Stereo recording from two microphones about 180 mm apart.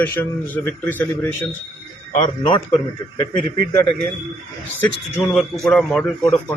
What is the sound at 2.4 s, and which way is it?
Speech, 25° left (ahead or behind).